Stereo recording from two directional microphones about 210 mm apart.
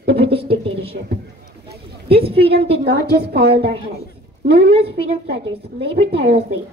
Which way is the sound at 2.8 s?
50° right (ahead or behind).